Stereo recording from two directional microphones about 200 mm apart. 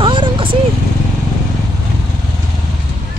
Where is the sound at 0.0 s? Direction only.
25° right (ahead or behind).